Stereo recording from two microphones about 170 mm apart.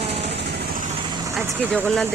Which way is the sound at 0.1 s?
85° right.